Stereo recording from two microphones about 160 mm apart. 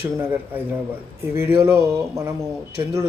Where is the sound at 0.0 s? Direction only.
10° right (ahead or behind).